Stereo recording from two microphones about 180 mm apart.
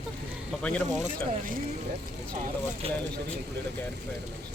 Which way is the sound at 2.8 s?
35° right (ahead or behind).